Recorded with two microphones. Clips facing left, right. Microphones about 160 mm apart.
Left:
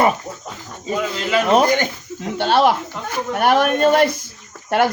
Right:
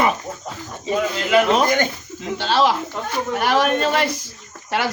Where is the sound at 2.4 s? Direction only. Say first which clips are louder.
Left 3 dB; 55° left (ahead or behind).